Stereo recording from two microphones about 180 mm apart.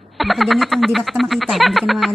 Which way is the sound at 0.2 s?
Centre (ahead or behind).